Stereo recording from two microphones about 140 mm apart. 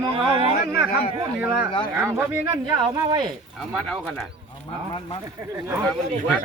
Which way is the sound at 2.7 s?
35° right (ahead or behind).